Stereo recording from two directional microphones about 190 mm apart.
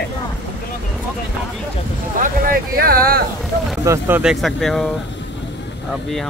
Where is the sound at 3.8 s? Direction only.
10° right (ahead or behind).